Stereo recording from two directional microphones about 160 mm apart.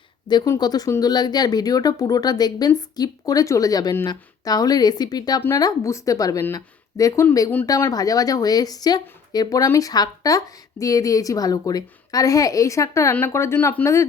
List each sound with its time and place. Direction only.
0.3 s speech: 25° left (ahead or behind)